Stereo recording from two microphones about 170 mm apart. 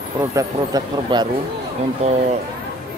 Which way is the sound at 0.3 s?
20° right (ahead or behind).